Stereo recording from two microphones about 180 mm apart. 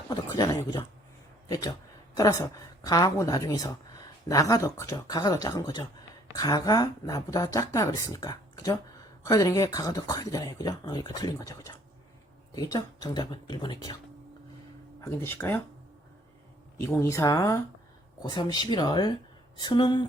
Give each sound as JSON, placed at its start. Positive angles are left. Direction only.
{"t": 0.1, "sound": "speech", "side_deg": 20}
{"t": 15.0, "sound": "speech", "side_deg": 10}
{"t": 16.8, "sound": "speech", "side_deg": 15}